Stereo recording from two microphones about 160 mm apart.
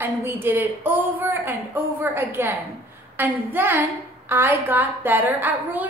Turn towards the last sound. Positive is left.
turn(degrees=-10)  # may be behind; listen again after turning